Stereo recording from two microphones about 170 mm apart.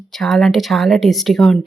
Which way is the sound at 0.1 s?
Centre (ahead or behind).